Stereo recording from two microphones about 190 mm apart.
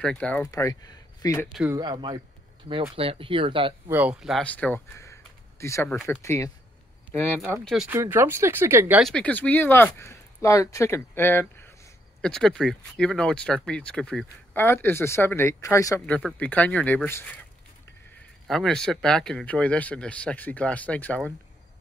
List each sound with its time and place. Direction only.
0.0 s speech: 5° left (ahead or behind)
0.5 s speech: 20° left (ahead or behind)
1.5 s speech: 5° right (ahead or behind)
1.8 s speech: 25° right (ahead or behind)
3.9 s speech: 5° right (ahead or behind); by 7.4 s 10° left (ahead or behind)
7.6 s speech: centre (ahead or behind)
7.9 s speech: 15° right (ahead or behind)
9.0 s speech: 5° left (ahead or behind)
18.5 s speech: 5° left (ahead or behind)